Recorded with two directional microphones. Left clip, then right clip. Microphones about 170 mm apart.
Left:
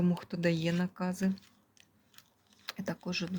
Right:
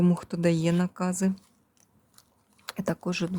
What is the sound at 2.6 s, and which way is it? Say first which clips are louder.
Speech: right 8 dB; 50° right (ahead or behind).